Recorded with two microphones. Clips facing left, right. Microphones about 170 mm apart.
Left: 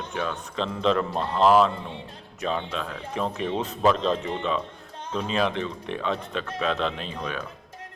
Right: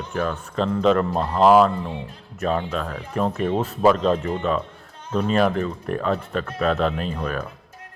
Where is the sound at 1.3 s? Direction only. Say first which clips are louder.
Right 4 dB; 5° right (ahead or behind).